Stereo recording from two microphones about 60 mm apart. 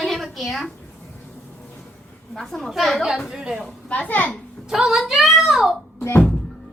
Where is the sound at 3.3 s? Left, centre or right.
Centre.